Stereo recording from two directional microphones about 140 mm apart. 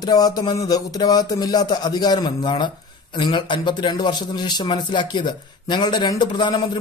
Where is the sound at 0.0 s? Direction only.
30° left (ahead or behind).